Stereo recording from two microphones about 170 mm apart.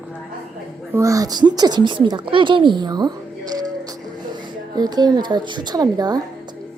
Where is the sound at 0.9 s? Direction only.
15° right (ahead or behind).